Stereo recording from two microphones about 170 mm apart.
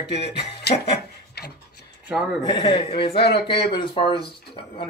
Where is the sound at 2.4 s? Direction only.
30° left (ahead or behind).